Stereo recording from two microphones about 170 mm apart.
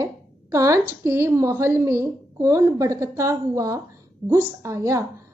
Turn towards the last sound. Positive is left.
turn(degrees=-15)  # may be behind; listen again after turning